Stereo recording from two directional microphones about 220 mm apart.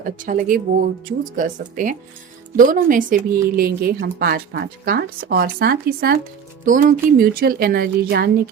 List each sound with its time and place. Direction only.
0.0 s speech: 40° right (ahead or behind)